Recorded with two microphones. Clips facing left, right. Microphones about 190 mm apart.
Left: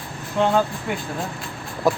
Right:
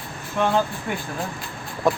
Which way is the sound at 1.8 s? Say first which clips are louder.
Left 1 dB; 5° left (ahead or behind).